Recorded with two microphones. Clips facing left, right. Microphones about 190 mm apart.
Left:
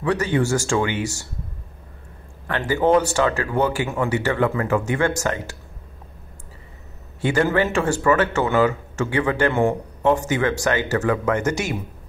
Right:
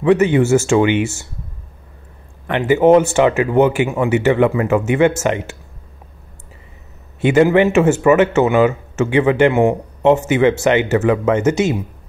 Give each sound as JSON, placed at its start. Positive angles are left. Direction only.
{"t": 0.0, "sound": "speech", "side_deg": -20}
{"t": 2.4, "sound": "speech", "side_deg": -20}
{"t": 7.2, "sound": "speech", "side_deg": -20}